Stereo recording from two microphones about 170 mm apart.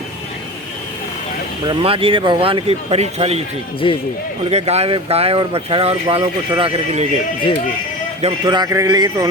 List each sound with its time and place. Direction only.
1.6 s speech: 30° right (ahead or behind)
3.8 s speech: 30° left (ahead or behind)
4.4 s speech: 40° right (ahead or behind)
8.2 s a man's voice: 25° right (ahead or behind)